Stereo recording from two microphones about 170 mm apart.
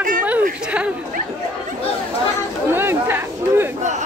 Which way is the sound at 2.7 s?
15° right (ahead or behind).